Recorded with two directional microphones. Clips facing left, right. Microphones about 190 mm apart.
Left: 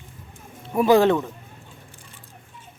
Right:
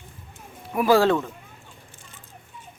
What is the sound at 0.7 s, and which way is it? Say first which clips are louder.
Speech: left 2 dB; 20° left (ahead or behind).